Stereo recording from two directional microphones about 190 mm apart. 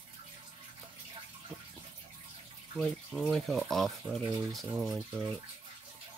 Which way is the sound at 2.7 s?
5° left (ahead or behind).